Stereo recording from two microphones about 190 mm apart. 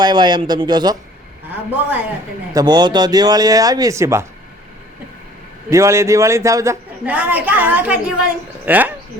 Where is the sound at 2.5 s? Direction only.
20° right (ahead or behind).